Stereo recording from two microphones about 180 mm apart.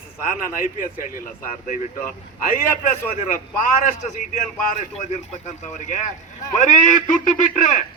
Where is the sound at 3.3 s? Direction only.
50° left (ahead or behind).